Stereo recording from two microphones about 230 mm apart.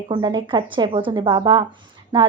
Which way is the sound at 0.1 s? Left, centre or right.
Centre.